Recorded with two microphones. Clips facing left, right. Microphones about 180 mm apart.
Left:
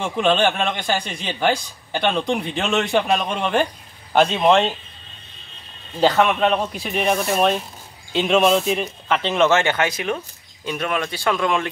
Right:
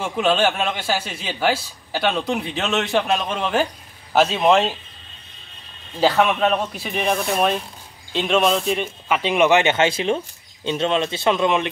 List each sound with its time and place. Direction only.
0.0 s a man's voice: 5° right (ahead or behind)
5.9 s a man's voice: centre (ahead or behind); by 11.7 s 20° right (ahead or behind)